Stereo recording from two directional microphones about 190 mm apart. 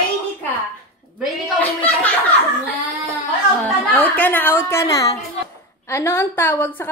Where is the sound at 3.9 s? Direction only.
10° left (ahead or behind).